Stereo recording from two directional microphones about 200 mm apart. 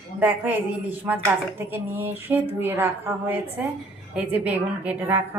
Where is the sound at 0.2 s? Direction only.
10° right (ahead or behind).